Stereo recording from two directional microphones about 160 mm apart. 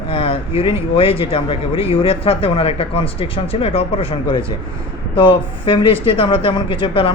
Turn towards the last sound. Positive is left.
turn(degrees=35)  # may be behind; listen again after turning